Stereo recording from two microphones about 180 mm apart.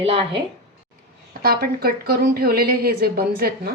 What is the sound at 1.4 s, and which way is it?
A woman's voice, 55° right (ahead or behind).